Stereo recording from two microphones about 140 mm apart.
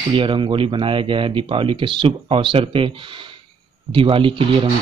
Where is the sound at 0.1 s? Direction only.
35° right (ahead or behind).